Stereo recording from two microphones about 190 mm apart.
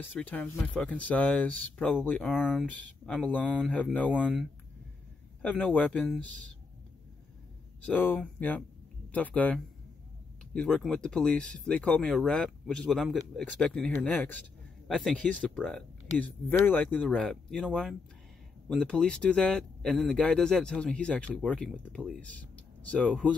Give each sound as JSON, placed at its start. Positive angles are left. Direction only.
{"t": 0.0, "sound": "speech", "side_deg": 10}
{"t": 3.4, "sound": "speech", "side_deg": -5}
{"t": 3.7, "sound": "speech", "side_deg": 5}
{"t": 5.4, "sound": "speech", "side_deg": 5}
{"t": 7.8, "sound": "speech", "side_deg": 10}